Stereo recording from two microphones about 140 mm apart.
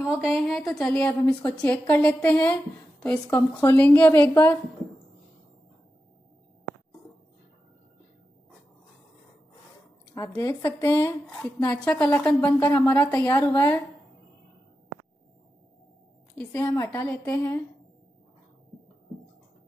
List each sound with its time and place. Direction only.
0.0 s a woman's voice: 5° right (ahead or behind); by 4.6 s 15° left (ahead or behind)
10.1 s speech: 20° left (ahead or behind)
11.2 s a woman's voice: 10° left (ahead or behind)
16.3 s a woman's voice: 20° left (ahead or behind)